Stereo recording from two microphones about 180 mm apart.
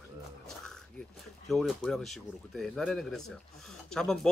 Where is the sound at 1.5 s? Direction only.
Centre (ahead or behind).